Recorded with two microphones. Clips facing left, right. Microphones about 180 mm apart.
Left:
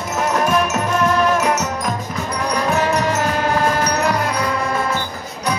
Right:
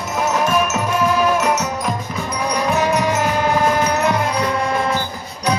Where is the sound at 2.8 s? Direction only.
15° right (ahead or behind).